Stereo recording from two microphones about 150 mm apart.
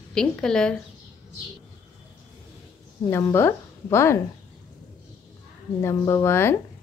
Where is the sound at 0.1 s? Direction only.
5° left (ahead or behind).